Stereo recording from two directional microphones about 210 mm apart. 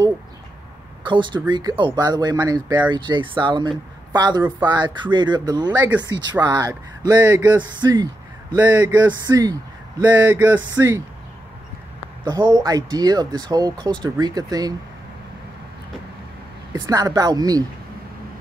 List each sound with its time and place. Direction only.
1.0 s a man's voice: 20° right (ahead or behind)
12.3 s a man's voice: 15° right (ahead or behind)
16.7 s a man's voice: 15° right (ahead or behind)